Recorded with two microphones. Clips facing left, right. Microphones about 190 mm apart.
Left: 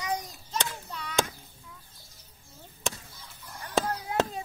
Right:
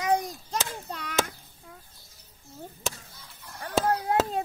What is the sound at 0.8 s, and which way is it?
Chop, 70° right (ahead or behind).